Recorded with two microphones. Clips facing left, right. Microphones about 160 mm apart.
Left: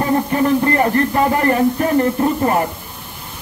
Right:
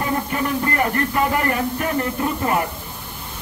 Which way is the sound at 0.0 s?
35° left (ahead or behind).